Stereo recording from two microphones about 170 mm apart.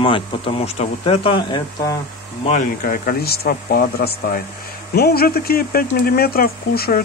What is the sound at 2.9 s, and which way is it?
Speech, 60° left (ahead or behind).